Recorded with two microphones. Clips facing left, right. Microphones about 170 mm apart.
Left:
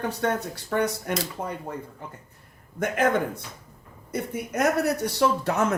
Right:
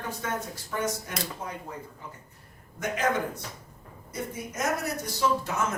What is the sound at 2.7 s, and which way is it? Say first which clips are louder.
A man's voice: left 5 dB; 55° left (ahead or behind).